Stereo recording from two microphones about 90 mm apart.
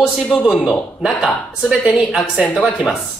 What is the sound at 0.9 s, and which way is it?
Speech, 5° right (ahead or behind).